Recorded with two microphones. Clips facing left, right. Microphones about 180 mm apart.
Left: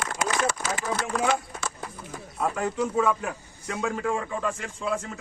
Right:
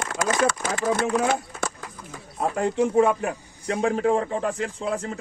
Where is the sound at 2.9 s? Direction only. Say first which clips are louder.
Right 5 dB; 50° right (ahead or behind).